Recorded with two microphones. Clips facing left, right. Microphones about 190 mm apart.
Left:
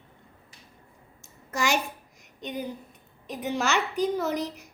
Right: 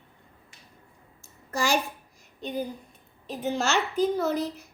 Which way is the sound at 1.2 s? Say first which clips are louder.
Even; 20° left (ahead or behind).